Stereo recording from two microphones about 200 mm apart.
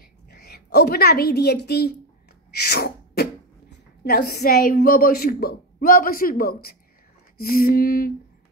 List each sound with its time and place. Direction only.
0.3 s a woman's voice: 55° left (ahead or behind)
2.7 s beatboxing: 50° left (ahead or behind)
4.0 s a woman's voice: 50° left (ahead or behind)